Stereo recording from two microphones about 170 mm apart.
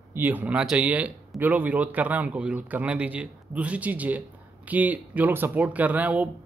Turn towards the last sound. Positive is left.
turn(degrees=-10)  # may be behind; listen again after turning